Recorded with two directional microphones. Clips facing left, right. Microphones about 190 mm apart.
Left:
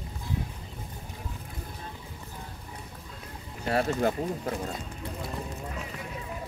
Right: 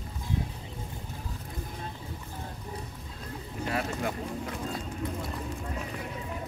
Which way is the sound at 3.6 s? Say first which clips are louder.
Left 6 dB; 35° left (ahead or behind).